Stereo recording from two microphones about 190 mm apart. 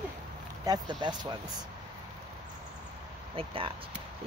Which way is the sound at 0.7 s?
25° right (ahead or behind).